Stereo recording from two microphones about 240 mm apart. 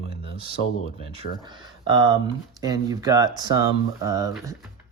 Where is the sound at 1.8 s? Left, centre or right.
Centre.